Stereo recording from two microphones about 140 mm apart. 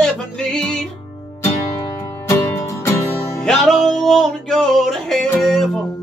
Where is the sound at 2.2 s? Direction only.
20° left (ahead or behind).